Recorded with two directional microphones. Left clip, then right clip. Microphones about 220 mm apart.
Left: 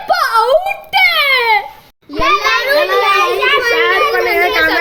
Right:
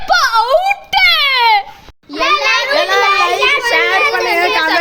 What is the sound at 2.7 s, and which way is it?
Speech, 45° right (ahead or behind).